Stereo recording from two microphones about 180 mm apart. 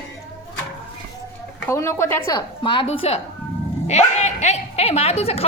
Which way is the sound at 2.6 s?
25° left (ahead or behind).